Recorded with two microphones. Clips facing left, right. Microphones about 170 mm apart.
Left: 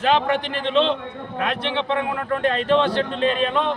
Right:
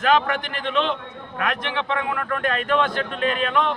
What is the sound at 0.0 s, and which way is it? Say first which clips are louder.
Speech: left 1 dB; 30° left (ahead or behind).